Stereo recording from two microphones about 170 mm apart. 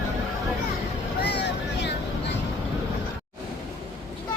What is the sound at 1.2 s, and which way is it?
Vehicle, 75° left (ahead or behind).